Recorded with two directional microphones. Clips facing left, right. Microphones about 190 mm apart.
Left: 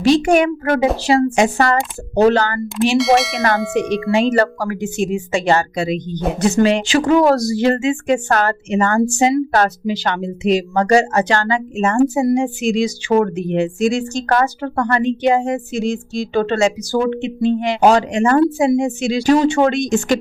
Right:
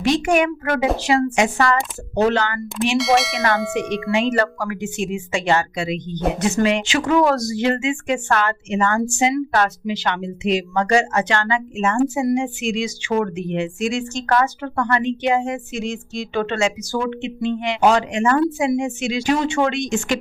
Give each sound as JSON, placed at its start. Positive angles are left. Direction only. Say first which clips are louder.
{"t": 0.0, "sound": "speech", "louder": "left 5 dB", "side_deg": 35}
{"t": 3.0, "sound": "bell", "louder": "left 3 dB", "side_deg": 0}
{"t": 3.8, "sound": "speech", "louder": "left 4 dB", "side_deg": 35}